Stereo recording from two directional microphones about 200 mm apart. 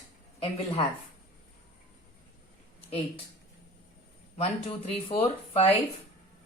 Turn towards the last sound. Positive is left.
turn(degrees=30)  # may be behind; listen again after turning